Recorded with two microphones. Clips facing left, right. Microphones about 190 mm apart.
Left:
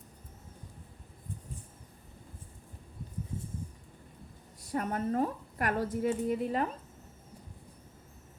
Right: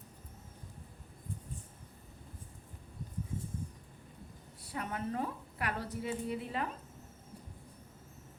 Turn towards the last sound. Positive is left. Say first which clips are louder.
# left 7 dB
turn(degrees=45)  # may be behind; listen again after turning